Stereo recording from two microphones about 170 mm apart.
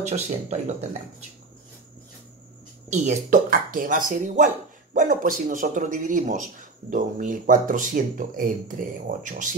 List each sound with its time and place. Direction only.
0.0 s speech: 40° right (ahead or behind)
2.9 s speech: 45° right (ahead or behind)